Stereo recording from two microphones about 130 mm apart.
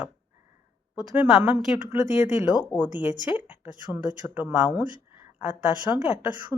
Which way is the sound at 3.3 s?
15° right (ahead or behind).